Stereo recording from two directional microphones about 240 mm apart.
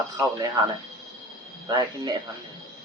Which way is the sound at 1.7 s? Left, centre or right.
Centre.